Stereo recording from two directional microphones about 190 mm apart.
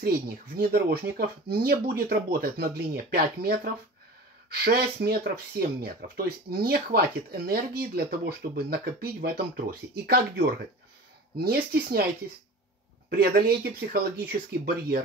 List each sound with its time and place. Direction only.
0.0 s speech: 50° right (ahead or behind)
13.1 s speech: 50° right (ahead or behind)